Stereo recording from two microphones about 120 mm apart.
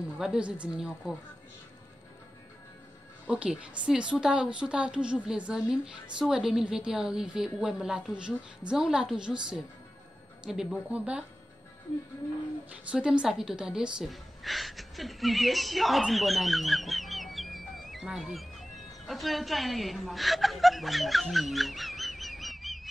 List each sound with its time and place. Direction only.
0.2 s a woman's voice: 5° right (ahead or behind)
3.3 s a woman's voice: 10° right (ahead or behind)
12.9 s a woman's voice: 10° right (ahead or behind)